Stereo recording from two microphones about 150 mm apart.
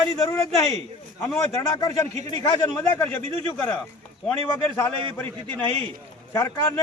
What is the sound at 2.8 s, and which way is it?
Speech, 15° left (ahead or behind).